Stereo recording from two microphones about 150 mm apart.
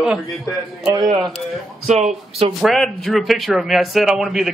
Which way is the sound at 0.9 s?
30° right (ahead or behind).